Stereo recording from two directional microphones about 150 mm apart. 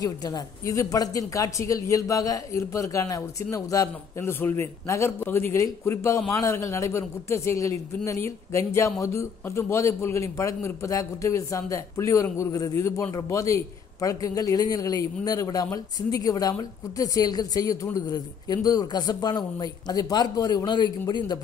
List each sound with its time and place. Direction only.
0.0 s speech: 25° left (ahead or behind)